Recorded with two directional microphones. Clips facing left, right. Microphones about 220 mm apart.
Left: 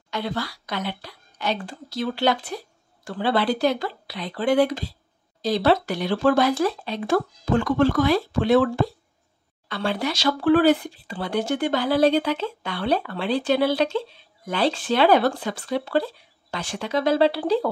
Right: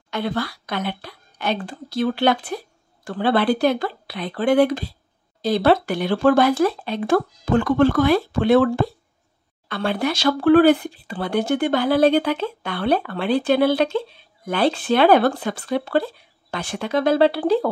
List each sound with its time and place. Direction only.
0.1 s speech: 55° right (ahead or behind)